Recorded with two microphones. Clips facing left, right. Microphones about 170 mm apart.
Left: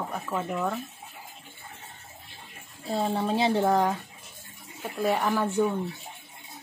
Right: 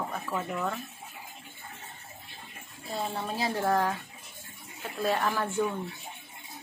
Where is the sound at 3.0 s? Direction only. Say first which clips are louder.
Left 7 dB; 25° left (ahead or behind); by 5.6 s 10° left (ahead or behind).